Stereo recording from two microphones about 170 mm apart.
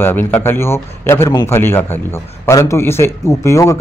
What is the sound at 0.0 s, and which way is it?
Speech, 10° left (ahead or behind).